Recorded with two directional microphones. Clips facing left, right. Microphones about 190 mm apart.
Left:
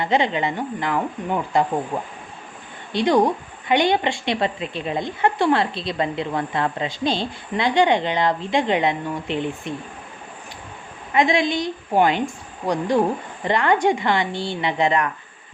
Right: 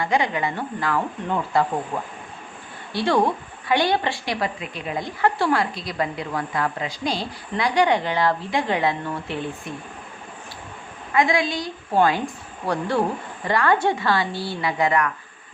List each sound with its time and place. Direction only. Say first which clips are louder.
0.0 s speech: left 2 dB; 25° left (ahead or behind)
11.1 s speech: left 2 dB; 20° left (ahead or behind)